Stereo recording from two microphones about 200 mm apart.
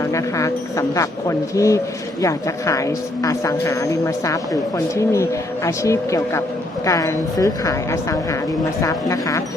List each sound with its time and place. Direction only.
0.1 s a woman's voice: 15° left (ahead or behind)